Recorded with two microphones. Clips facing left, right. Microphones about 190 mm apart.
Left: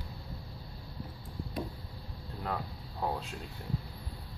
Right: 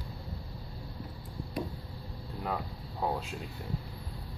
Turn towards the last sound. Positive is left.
turn(degrees=-5)  # may be behind; listen again after turning